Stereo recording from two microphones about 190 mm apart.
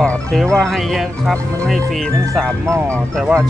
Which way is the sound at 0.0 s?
5° left (ahead or behind).